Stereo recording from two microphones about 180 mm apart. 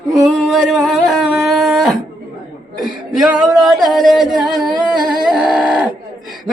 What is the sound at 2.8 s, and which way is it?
Singing, centre (ahead or behind).